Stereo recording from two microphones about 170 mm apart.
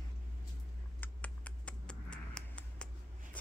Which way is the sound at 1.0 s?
10° left (ahead or behind).